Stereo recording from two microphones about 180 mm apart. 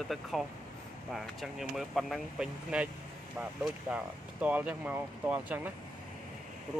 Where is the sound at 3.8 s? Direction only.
10° right (ahead or behind).